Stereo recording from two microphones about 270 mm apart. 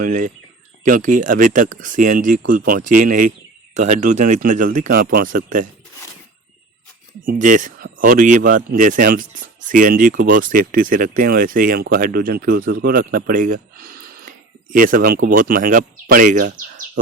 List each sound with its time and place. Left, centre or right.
0.0 s speech: right
7.3 s speech: right
16.5 s bird: right